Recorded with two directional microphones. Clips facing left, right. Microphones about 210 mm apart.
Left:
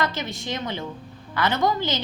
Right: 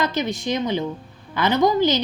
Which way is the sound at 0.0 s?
20° right (ahead or behind).